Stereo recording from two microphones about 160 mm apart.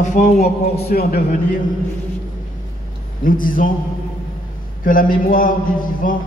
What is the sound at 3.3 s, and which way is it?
Speech, 60° left (ahead or behind).